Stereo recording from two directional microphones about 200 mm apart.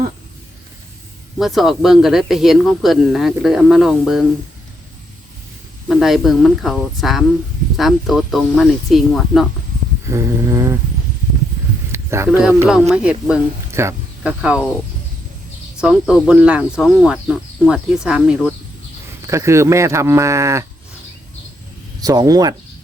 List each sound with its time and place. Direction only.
1.4 s speech: centre (ahead or behind)
5.9 s speech: centre (ahead or behind)
10.1 s speech: 15° right (ahead or behind)
11.9 s speech: 15° right (ahead or behind)
15.8 s speech: 5° right (ahead or behind)
19.3 s speech: 15° right (ahead or behind)
22.0 s speech: 20° right (ahead or behind)